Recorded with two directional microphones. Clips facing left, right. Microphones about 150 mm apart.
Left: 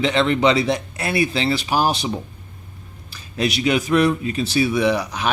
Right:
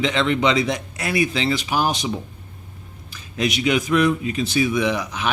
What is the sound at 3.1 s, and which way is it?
Speech, 35° left (ahead or behind).